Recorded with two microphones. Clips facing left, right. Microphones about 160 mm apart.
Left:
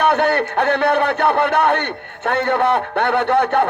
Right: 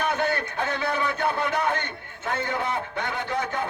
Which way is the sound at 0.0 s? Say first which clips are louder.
Left 9 dB; 65° left (ahead or behind).